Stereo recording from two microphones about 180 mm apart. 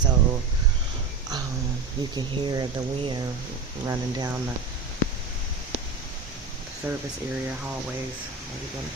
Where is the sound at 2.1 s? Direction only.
25° right (ahead or behind).